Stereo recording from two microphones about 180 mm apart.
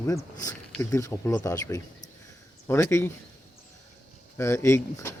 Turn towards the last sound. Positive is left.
turn(degrees=15)  # may be behind; listen again after turning